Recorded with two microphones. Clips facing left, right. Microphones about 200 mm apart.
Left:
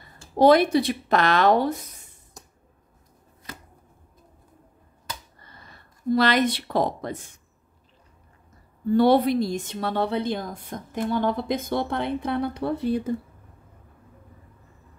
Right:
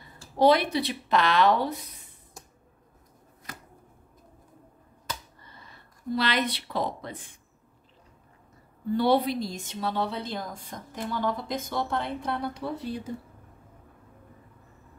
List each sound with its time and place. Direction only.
0.4 s a woman's voice: 45° left (ahead or behind)
6.1 s a woman's voice: 45° left (ahead or behind)
8.9 s a woman's voice: 50° left (ahead or behind)